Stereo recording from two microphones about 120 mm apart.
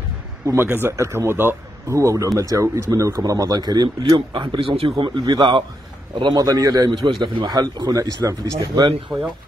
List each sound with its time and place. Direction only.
0.5 s speech: 20° right (ahead or behind); by 4.9 s 50° right (ahead or behind)
5.0 s speech: 40° right (ahead or behind)